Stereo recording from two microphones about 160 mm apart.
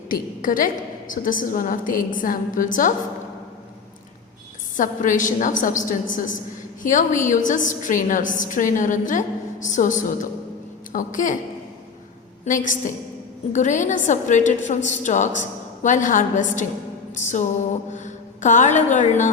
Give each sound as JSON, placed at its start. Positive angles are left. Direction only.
{"t": 0.1, "sound": "a woman's voice", "side_deg": 60}
{"t": 4.8, "sound": "a woman's voice", "side_deg": 55}
{"t": 12.5, "sound": "a woman's voice", "side_deg": 55}